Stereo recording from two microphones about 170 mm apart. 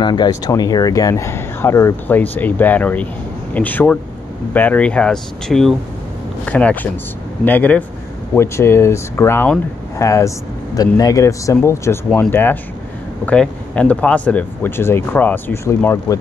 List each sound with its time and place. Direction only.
0.0 s speech: 25° left (ahead or behind)